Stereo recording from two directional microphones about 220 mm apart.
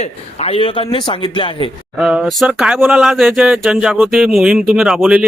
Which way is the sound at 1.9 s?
5° right (ahead or behind).